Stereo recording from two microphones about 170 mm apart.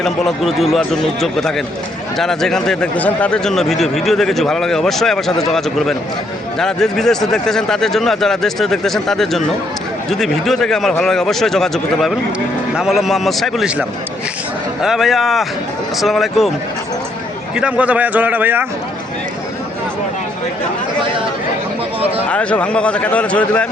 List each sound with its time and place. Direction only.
0.0 s speech: centre (ahead or behind)
17.5 s a man's voice: 5° right (ahead or behind)
22.3 s a man's voice: 5° left (ahead or behind)